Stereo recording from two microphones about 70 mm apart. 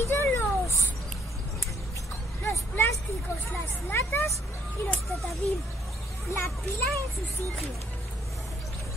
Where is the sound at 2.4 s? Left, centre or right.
Left.